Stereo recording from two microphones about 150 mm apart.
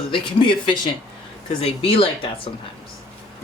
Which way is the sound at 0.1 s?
35° left (ahead or behind).